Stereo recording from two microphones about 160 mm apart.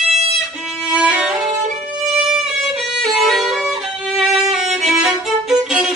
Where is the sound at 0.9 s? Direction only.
10° right (ahead or behind).